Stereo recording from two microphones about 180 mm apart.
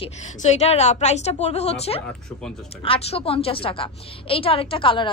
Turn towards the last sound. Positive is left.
turn(degrees=30)  # may be behind; listen again after turning